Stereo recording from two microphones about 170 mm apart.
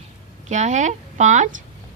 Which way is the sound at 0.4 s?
45° right (ahead or behind).